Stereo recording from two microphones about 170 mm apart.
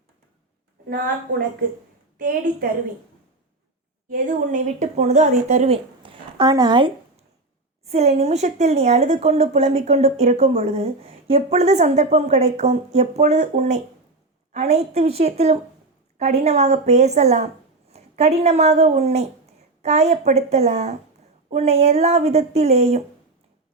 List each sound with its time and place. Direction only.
0.9 s a woman's voice: 60° right (ahead or behind)
4.1 s speech: 50° right (ahead or behind); by 7.3 s 30° right (ahead or behind)
7.9 s a woman's voice: 40° right (ahead or behind)